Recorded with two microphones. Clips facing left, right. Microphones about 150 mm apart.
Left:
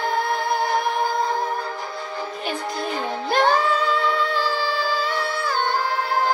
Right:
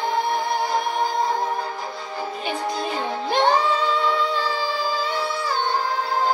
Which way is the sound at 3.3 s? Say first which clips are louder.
Even; 20° right (ahead or behind).